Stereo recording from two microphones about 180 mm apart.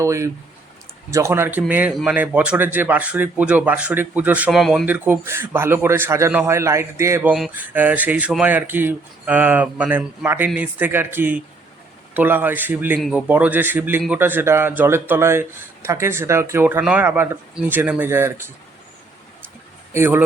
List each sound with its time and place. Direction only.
0.0 s a man's voice: 15° right (ahead or behind); by 4.9 s centre (ahead or behind)
4.9 s a man's voice: 10° right (ahead or behind)
19.9 s a man's voice: 10° right (ahead or behind)